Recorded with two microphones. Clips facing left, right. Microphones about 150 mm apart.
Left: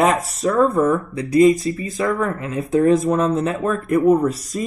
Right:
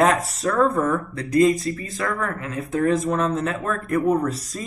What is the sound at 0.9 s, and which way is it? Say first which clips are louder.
Speech: left 4 dB; 15° left (ahead or behind).